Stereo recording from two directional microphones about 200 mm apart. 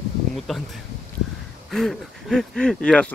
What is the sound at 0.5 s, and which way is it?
Speech, centre (ahead or behind).